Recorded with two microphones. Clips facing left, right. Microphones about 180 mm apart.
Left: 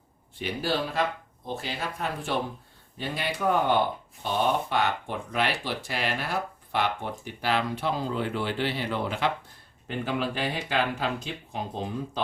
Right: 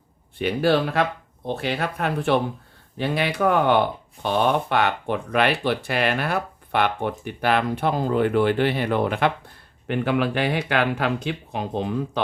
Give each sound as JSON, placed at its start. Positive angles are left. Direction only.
{"t": 0.3, "sound": "speech", "side_deg": -65}
{"t": 9.8, "sound": "speech", "side_deg": -70}